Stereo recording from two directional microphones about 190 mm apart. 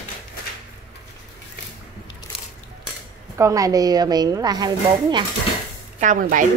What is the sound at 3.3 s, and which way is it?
A woman's voice, 15° right (ahead or behind).